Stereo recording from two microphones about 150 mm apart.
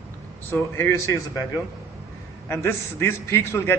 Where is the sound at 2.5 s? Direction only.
15° left (ahead or behind).